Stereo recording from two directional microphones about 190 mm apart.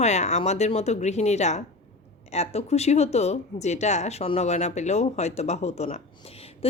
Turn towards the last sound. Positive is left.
turn(degrees=30)  # may be behind; listen again after turning